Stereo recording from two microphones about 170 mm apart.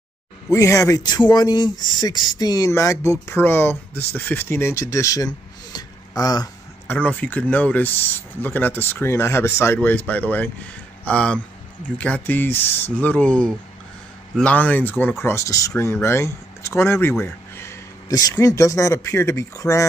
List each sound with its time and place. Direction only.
0.5 s speech: 20° left (ahead or behind)
6.9 s speech: 10° left (ahead or behind)